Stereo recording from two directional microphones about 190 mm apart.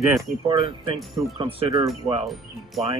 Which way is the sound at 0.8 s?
30° right (ahead or behind).